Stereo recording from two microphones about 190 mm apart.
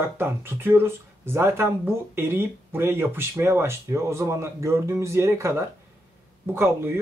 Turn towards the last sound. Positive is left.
turn(degrees=-10)  # may be behind; listen again after turning